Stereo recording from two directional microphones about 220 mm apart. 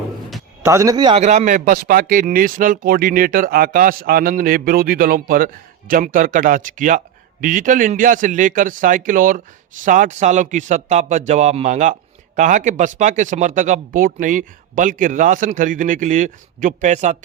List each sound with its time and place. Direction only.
0.6 s speech: 15° right (ahead or behind)
1.2 s speech: 30° right (ahead or behind)